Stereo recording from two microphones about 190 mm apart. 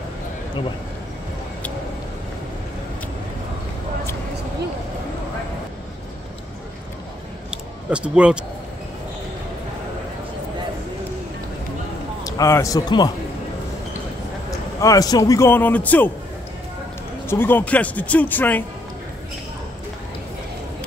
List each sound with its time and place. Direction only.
7.5 s a sound: 5° right (ahead or behind)
12.2 s a man's voice: 20° left (ahead or behind)
14.8 s a man's voice: 20° left (ahead or behind)
17.3 s a man's voice: 10° left (ahead or behind)